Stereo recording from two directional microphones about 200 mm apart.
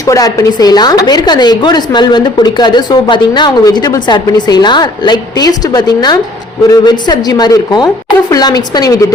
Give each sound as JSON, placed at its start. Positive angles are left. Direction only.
{"t": 0.0, "sound": "a woman's voice", "side_deg": 15}